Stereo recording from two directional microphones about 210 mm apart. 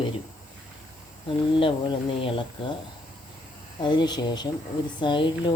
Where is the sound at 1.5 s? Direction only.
25° left (ahead or behind).